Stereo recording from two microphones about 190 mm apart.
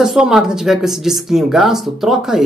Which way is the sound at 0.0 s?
Centre (ahead or behind).